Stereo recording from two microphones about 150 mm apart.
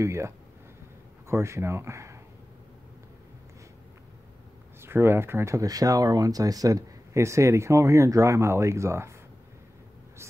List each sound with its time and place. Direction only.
0.0 s speech: 20° right (ahead or behind)
4.8 s speech: 15° right (ahead or behind)